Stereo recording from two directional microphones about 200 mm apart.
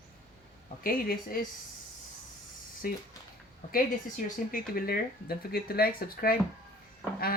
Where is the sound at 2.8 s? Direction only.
45° left (ahead or behind).